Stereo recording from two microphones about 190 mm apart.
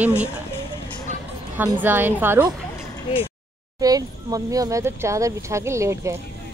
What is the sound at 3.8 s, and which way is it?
Speech, 20° right (ahead or behind).